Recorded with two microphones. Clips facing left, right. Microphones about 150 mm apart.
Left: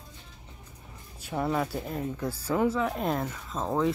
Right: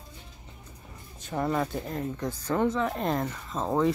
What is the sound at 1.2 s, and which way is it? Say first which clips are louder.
Speech: right 1 dB; 5° left (ahead or behind).